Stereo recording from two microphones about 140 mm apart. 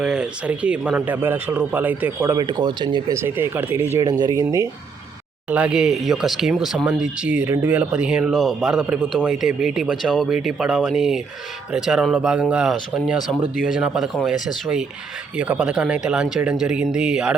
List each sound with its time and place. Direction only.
0.0 s speech: 5° right (ahead or behind); by 3.0 s 35° right (ahead or behind)
3.1 s speech: 15° right (ahead or behind)
4.0 s speech: 25° right (ahead or behind)
5.5 s speech: 10° right (ahead or behind)